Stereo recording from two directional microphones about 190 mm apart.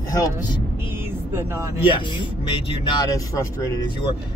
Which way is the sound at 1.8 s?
25° left (ahead or behind).